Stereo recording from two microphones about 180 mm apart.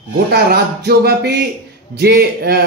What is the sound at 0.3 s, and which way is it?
A man's voice, 60° right (ahead or behind).